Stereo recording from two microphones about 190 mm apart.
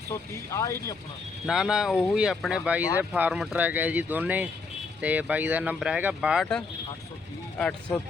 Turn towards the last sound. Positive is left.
turn(degrees=5)  # may be behind; listen again after turning